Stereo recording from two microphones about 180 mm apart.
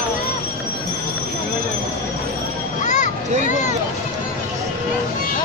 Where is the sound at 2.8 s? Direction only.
45° left (ahead or behind).